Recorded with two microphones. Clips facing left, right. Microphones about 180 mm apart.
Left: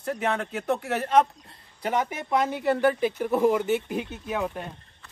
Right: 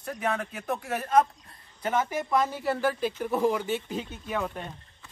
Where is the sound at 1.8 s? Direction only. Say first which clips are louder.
Left 1 dB; 20° left (ahead or behind).